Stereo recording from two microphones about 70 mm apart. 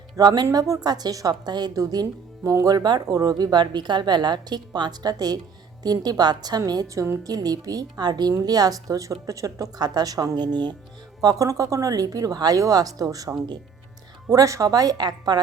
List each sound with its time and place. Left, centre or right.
0.2 s a woman's voice: right
0.5 s a woman's voice: right
1.7 s speech: right
2.4 s a woman's voice: right
6.8 s speech: right
7.3 s speech: right
9.7 s a woman's voice: right
10.3 s speech: right
11.2 s speech: right
14.3 s speech: right